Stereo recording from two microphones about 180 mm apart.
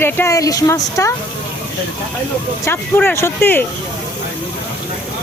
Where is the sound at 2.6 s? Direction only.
10° left (ahead or behind).